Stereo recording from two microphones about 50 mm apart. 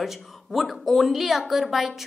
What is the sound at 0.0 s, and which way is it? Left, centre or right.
A woman's voice, centre.